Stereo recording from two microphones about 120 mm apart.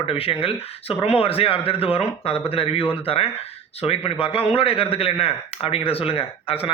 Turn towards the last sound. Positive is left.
turn(degrees=50)  # may be behind; listen again after turning